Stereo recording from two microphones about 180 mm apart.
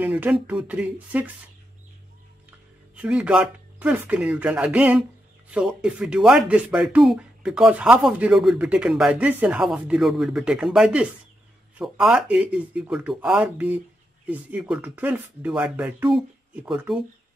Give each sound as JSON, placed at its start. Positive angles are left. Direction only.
{"t": 0.0, "sound": "speech", "side_deg": -10}
{"t": 3.0, "sound": "speech", "side_deg": -5}